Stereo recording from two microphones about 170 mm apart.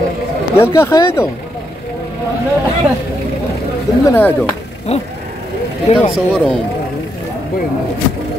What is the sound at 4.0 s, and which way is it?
Speech, 15° left (ahead or behind).